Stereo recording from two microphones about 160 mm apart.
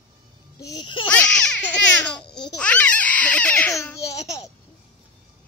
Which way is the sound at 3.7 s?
20° left (ahead or behind).